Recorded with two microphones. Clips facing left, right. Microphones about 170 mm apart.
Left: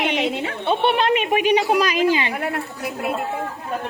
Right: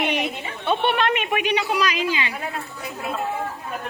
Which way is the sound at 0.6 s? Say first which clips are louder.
Left 2 dB; 30° left (ahead or behind).